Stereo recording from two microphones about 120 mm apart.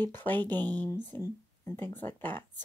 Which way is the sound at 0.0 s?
15° left (ahead or behind).